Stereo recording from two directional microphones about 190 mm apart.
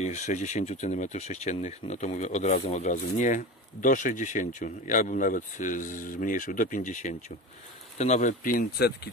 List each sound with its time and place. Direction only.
0.0 s speech: 40° left (ahead or behind); by 9.1 s 55° left (ahead or behind)